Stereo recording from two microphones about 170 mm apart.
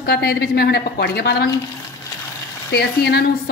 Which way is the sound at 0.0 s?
70° left (ahead or behind).